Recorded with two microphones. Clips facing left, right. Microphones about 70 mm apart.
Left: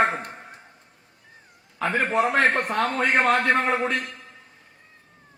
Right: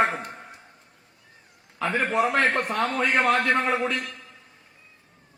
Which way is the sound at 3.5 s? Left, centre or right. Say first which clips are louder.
Left 1 dB; left.